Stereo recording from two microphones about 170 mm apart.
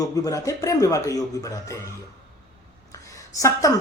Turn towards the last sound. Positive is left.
turn(degrees=20)  # may be behind; listen again after turning